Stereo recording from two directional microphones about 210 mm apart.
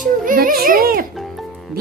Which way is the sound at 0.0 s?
40° right (ahead or behind).